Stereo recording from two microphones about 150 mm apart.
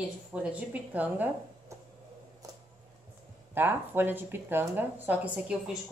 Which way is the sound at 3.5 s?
15° right (ahead or behind).